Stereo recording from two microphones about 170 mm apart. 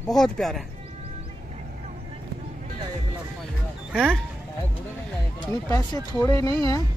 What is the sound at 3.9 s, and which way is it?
Speech, 5° right (ahead or behind).